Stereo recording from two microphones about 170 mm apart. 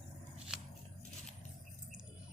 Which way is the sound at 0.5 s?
5° right (ahead or behind).